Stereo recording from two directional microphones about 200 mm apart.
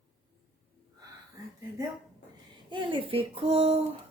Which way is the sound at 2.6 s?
25° right (ahead or behind).